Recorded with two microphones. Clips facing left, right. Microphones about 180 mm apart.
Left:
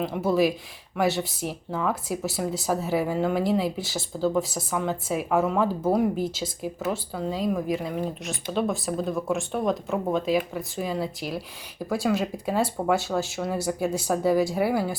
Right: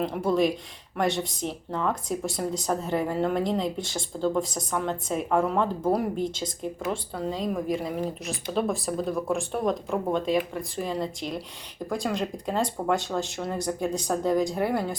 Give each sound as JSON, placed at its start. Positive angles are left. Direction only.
{"t": 0.0, "sound": "speech", "side_deg": 5}